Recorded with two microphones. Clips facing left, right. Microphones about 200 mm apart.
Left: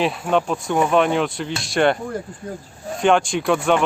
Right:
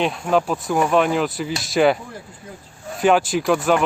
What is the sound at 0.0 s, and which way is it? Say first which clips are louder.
Speech: even; centre (ahead or behind).